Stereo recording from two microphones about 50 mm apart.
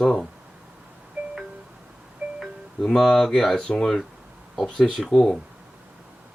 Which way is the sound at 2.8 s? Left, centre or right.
Centre.